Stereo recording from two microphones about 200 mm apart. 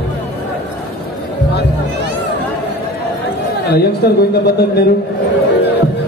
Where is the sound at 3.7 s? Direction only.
55° left (ahead or behind).